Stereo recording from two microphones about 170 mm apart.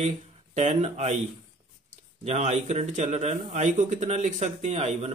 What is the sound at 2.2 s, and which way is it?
A man's voice, 40° right (ahead or behind).